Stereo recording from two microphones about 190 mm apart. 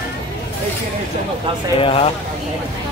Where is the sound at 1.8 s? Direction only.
30° left (ahead or behind).